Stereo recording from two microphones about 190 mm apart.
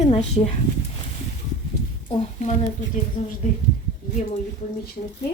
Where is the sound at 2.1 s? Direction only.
35° left (ahead or behind).